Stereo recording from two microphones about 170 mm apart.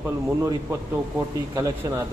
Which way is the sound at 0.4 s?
15° right (ahead or behind).